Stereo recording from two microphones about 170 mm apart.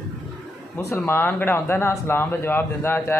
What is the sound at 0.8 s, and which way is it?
Speech, 15° left (ahead or behind).